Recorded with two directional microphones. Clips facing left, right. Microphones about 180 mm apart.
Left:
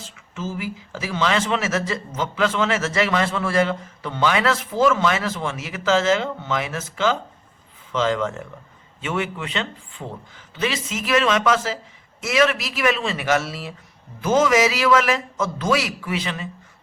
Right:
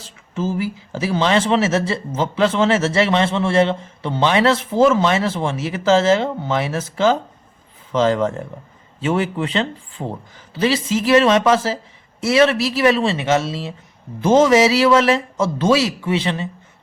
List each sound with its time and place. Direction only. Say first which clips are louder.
0.0 s a man's voice: right 7 dB; 35° right (ahead or behind)